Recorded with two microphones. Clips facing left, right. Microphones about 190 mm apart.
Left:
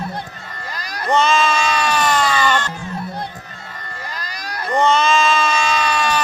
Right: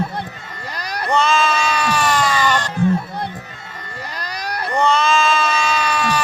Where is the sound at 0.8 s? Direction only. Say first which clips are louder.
Right 6 dB; 65° right (ahead or behind).